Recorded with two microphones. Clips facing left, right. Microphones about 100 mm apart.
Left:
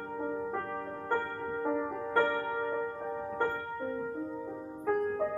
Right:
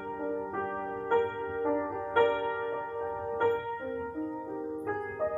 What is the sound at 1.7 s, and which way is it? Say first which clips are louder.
Music: right 1 dB; centre (ahead or behind).